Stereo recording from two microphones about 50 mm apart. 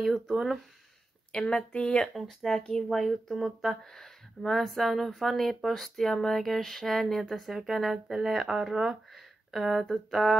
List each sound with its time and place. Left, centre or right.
0.0 s speech: centre
1.3 s a woman's voice: left
2.2 s speech: centre